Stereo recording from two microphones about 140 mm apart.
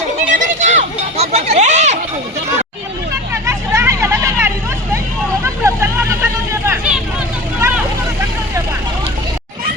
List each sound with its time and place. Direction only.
0.3 s a sound: 60° right (ahead or behind)
3.3 s hubbub: 20° right (ahead or behind)
5.4 s vehicle: 20° right (ahead or behind)